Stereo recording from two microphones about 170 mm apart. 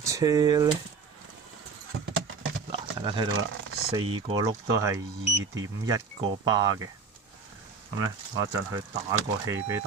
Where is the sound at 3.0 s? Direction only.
30° right (ahead or behind).